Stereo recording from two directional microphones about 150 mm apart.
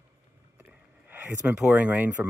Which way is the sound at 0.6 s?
10° right (ahead or behind).